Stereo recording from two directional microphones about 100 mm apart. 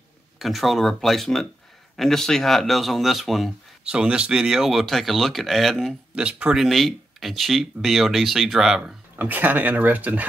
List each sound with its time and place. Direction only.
0.4 s speech: centre (ahead or behind)
6.1 s speech: 10° right (ahead or behind)
6.6 s speech: centre (ahead or behind)
9.1 s speech: 20° right (ahead or behind)